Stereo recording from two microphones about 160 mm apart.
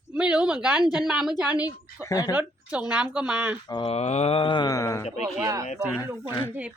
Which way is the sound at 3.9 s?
45° left (ahead or behind).